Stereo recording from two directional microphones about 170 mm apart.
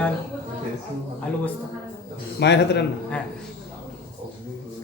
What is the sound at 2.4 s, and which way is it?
Speech, 85° left.